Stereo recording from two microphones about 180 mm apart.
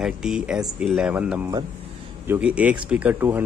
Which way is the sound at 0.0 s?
5° right (ahead or behind).